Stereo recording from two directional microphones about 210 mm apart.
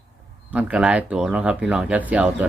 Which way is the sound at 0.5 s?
5° right (ahead or behind).